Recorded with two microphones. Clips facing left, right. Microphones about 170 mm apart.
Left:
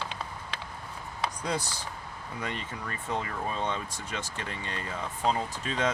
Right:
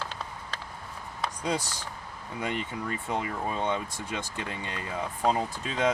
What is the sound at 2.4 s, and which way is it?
Speech, 15° right (ahead or behind).